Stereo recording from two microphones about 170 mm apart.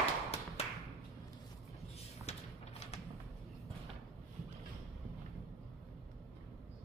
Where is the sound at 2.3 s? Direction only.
40° left (ahead or behind).